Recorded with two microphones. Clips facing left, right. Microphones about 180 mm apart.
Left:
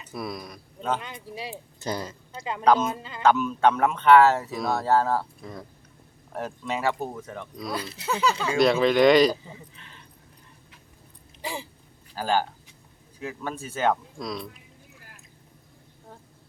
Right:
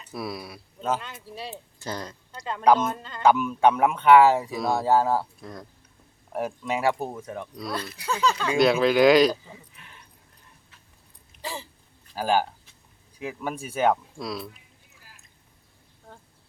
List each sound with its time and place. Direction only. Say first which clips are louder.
0.1 s speech: even; 5° right (ahead or behind)
1.4 s speech: right 1 dB; 15° left (ahead or behind)
3.2 s speech: right 1 dB; 10° right (ahead or behind)
4.5 s speech: right 1 dB; centre (ahead or behind)
4.9 s speech: right 1 dB; 10° right (ahead or behind)
5.4 s speech: left 1 dB; centre (ahead or behind)
6.3 s speech: right 3 dB; 10° right (ahead or behind)
7.9 s speech: left 1 dB; 25° left (ahead or behind)
8.1 s speech: even; 10° left (ahead or behind)
8.5 s speech: even; centre (ahead or behind)
12.1 s speech: right 2 dB; 10° right (ahead or behind)